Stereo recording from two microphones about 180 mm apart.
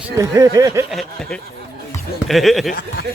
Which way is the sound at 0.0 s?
20° right (ahead or behind).